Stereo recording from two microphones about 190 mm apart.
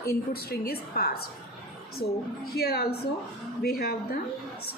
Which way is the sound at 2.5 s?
55° left (ahead or behind).